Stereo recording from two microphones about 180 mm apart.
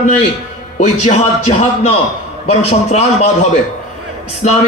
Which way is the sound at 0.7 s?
40° left (ahead or behind).